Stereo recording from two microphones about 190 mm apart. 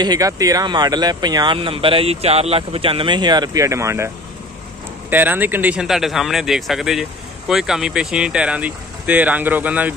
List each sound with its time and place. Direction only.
0.0 s speech: 20° right (ahead or behind)
5.1 s speech: 10° right (ahead or behind)